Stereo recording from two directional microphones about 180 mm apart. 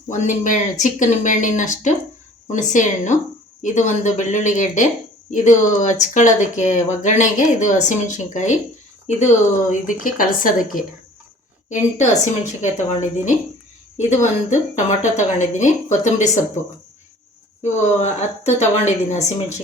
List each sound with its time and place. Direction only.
0.1 s a woman's voice: 45° left (ahead or behind)
17.6 s a woman's voice: 40° left (ahead or behind)